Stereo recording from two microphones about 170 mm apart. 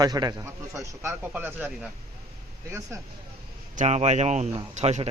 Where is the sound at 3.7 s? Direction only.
40° right (ahead or behind).